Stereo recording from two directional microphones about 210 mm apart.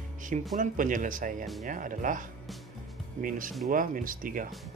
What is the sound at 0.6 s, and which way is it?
Speech, 40° right (ahead or behind).